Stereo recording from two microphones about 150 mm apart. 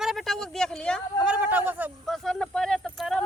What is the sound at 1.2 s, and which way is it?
Speech, 10° right (ahead or behind).